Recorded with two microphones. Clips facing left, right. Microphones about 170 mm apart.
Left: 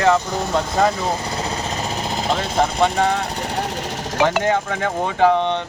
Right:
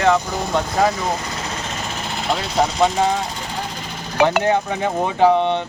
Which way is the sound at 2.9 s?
65° left (ahead or behind).